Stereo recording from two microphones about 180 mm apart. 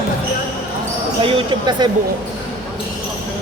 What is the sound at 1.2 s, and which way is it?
Speech, 25° right (ahead or behind).